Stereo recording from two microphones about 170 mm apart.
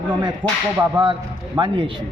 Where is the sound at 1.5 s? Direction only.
30° right (ahead or behind).